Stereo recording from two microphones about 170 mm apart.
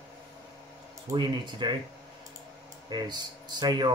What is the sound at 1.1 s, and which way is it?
Speech, 25° right (ahead or behind).